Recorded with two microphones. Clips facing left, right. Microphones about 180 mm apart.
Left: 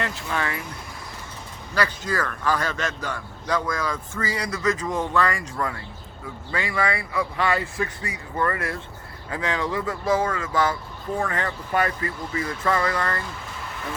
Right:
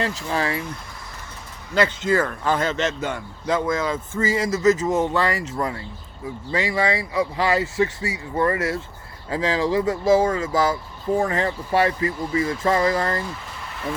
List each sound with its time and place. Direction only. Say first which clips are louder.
0.3 s speech: right 3 dB; 30° right (ahead or behind)
1.7 s speech: right 6 dB; 25° right (ahead or behind)